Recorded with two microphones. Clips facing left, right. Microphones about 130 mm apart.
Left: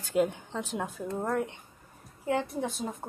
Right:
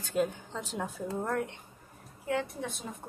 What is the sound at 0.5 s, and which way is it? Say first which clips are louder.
Speech: left 3 dB; centre (ahead or behind).